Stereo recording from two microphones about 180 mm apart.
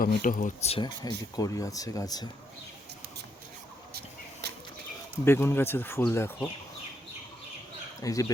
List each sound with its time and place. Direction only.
0.0 s speech: 50° left (ahead or behind)
1.0 s speech: 20° left (ahead or behind)
4.4 s bird flight: 65° right (ahead or behind)
5.2 s speech: 15° left (ahead or behind)
8.0 s speech: 20° left (ahead or behind)